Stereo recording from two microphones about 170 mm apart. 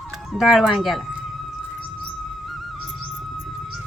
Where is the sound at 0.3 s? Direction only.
Centre (ahead or behind).